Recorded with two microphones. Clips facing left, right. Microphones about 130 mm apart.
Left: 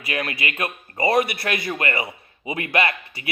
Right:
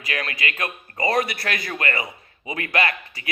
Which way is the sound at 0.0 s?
25° left (ahead or behind).